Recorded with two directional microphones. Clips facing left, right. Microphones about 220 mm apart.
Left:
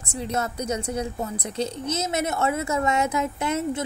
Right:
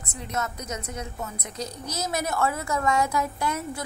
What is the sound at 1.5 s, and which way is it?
A woman's voice, 25° left (ahead or behind).